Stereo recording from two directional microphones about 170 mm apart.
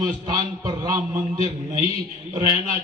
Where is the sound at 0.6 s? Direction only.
20° right (ahead or behind).